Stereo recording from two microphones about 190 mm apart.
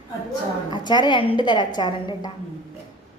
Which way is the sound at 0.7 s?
20° left (ahead or behind).